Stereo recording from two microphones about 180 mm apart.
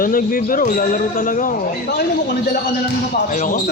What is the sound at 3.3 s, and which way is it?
Speech, 45° left (ahead or behind).